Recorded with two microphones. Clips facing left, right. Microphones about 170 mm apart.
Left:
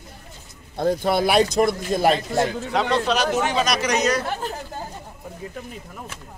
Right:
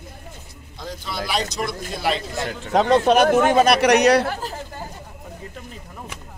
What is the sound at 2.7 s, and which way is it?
Speech, 45° right (ahead or behind).